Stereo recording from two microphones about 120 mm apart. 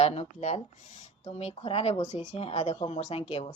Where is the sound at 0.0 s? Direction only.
65° left (ahead or behind).